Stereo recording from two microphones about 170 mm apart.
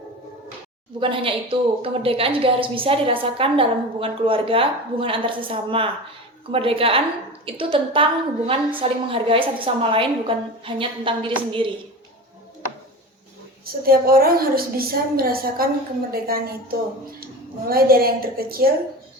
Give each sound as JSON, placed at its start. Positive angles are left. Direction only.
{"t": 0.9, "sound": "a woman's voice", "side_deg": -30}
{"t": 13.7, "sound": "a woman's voice", "side_deg": -60}